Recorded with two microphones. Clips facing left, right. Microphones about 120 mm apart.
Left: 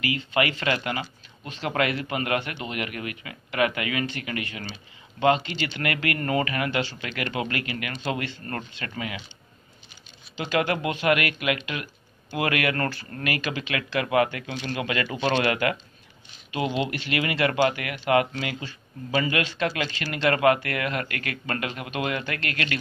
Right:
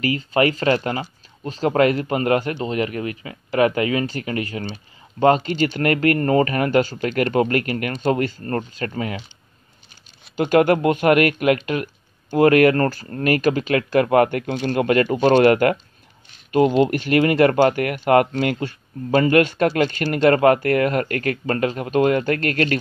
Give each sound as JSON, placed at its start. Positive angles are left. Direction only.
{"t": 0.0, "sound": "speech", "side_deg": -40}
{"t": 10.3, "sound": "speech", "side_deg": -50}